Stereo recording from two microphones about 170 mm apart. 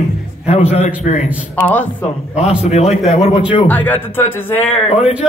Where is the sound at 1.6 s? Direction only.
10° left (ahead or behind).